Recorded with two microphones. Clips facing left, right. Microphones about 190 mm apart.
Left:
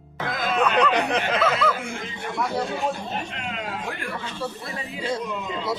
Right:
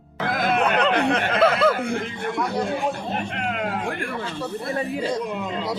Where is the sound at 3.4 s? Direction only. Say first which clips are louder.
Right 6 dB; 55° right (ahead or behind).